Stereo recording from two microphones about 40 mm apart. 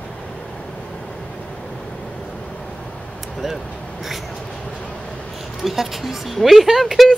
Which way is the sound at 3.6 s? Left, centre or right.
Centre.